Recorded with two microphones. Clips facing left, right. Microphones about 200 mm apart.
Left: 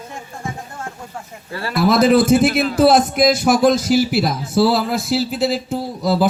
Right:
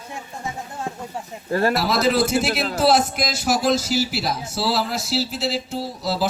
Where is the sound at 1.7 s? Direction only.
50° left (ahead or behind).